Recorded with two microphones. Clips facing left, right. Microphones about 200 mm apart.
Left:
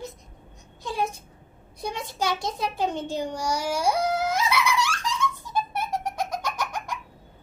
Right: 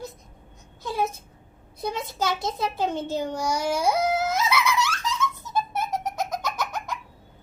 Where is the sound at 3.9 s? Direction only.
10° right (ahead or behind).